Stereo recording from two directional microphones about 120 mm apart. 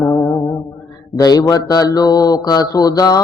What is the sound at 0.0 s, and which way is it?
Music, 25° left (ahead or behind).